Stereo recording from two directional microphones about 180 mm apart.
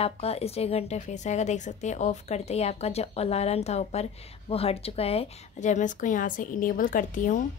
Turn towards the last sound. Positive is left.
turn(degrees=45)  # may be behind; listen again after turning